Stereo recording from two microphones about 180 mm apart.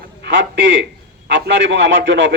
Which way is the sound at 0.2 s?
90° right.